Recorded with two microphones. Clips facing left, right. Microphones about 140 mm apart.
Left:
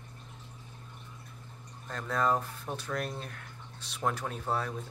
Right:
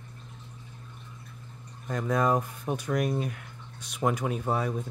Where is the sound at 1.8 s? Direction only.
10° right (ahead or behind).